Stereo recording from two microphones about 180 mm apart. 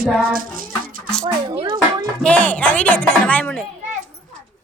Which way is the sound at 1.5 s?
30° right (ahead or behind).